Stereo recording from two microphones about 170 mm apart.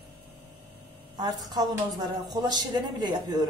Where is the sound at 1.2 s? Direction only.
25° right (ahead or behind).